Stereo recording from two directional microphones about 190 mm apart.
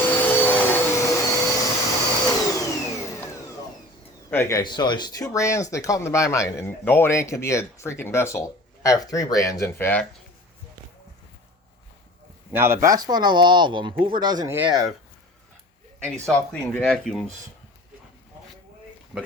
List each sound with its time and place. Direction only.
0.0 s vacuum cleaner: 10° left (ahead or behind)
4.3 s speech: 15° left (ahead or behind)
12.5 s speech: 15° right (ahead or behind)
14.5 s speech: 5° right (ahead or behind)
16.0 s speech: 5° left (ahead or behind)
19.1 s speech: 5° right (ahead or behind)